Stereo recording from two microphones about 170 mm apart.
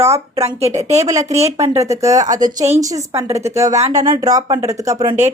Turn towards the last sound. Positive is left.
turn(degrees=-20)  # may be behind; listen again after turning